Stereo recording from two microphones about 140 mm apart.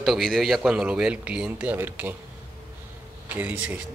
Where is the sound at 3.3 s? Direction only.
10° right (ahead or behind).